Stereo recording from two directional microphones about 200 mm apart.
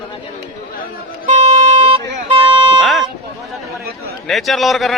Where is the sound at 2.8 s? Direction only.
Centre (ahead or behind).